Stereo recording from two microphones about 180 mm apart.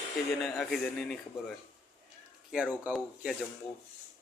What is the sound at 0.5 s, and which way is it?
Speech, centre (ahead or behind).